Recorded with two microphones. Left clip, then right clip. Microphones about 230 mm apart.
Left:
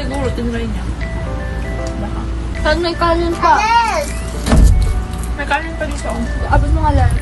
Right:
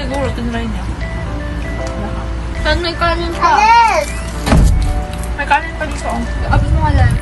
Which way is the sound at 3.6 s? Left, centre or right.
Right.